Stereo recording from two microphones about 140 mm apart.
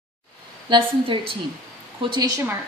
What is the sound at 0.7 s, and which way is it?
Speech, 35° right (ahead or behind).